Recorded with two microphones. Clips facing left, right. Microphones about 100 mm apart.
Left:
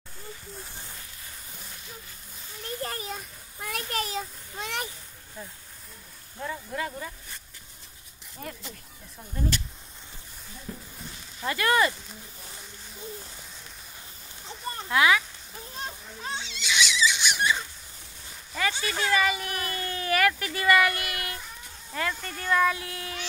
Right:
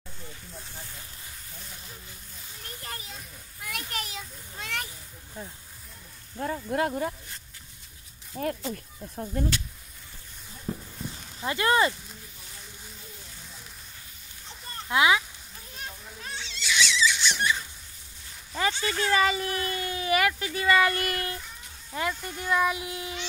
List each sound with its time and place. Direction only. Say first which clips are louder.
2.8 s children playing: left 6 dB; 45° left (ahead or behind)
4.6 s a sound: left 2 dB; 20° left (ahead or behind)
6.4 s speech: right 5 dB; 55° right (ahead or behind)
8.4 s speech: right 10 dB; 50° right (ahead or behind)
10.7 s a sound: right 6 dB; 25° right (ahead or behind)
11.3 s speech: even; 25° right (ahead or behind)
14.9 s speech: even; 20° right (ahead or behind)
16.3 s a sound: right 1 dB; 20° left (ahead or behind)
18.5 s speech: right 1 dB; 25° right (ahead or behind)
20.9 s speech: right 4 dB; 40° right (ahead or behind)
21.9 s speech: right 1 dB; 15° right (ahead or behind)